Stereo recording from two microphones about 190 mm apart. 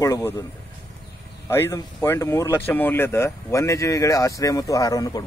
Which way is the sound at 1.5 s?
10° left (ahead or behind).